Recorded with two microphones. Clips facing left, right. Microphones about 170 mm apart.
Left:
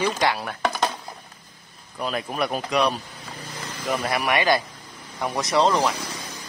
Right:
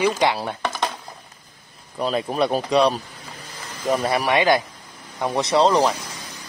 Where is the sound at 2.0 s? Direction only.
35° right (ahead or behind).